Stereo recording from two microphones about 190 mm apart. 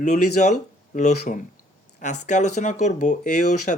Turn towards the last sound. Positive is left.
turn(degrees=40)  # may be behind; listen again after turning